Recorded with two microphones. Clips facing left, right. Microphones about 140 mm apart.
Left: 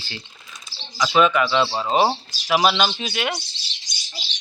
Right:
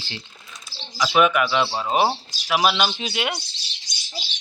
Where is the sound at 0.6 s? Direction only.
5° right (ahead or behind).